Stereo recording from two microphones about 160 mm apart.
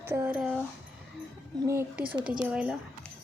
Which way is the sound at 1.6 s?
15° right (ahead or behind).